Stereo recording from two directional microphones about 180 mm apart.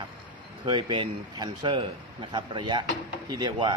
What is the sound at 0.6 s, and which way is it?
Speech, 25° right (ahead or behind).